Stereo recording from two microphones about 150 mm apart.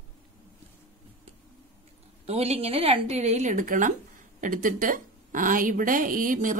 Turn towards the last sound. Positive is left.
turn(degrees=-65)  # may be behind; listen again after turning